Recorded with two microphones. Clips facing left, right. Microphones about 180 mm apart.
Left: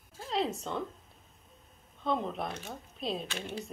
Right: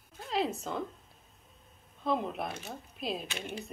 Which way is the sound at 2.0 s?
5° right (ahead or behind).